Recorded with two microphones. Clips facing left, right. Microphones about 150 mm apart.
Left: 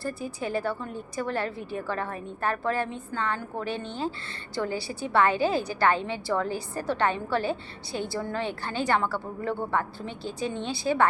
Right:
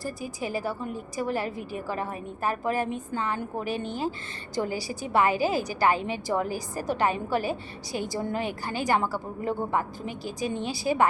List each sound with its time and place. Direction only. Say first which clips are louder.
0.0 s a woman's voice: left 1 dB; 10° right (ahead or behind)